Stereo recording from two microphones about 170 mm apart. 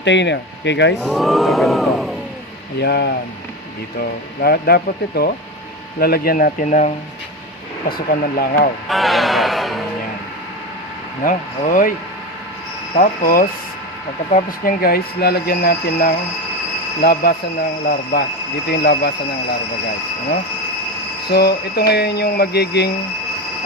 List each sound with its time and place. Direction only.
0.0 s speech: 90° left
1.1 s speech: centre (ahead or behind)
2.8 s speech: 75° left (ahead or behind); by 6.9 s 50° left (ahead or behind)
7.9 s speech: 60° left (ahead or behind)
8.9 s speech: centre (ahead or behind)
11.2 s speech: 50° left (ahead or behind)
13.0 s speech: 55° left (ahead or behind); by 19.1 s 70° left (ahead or behind)
21.2 s speech: 70° left (ahead or behind)